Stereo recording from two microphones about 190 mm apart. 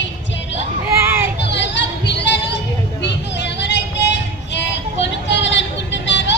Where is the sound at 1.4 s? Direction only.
65° left (ahead or behind).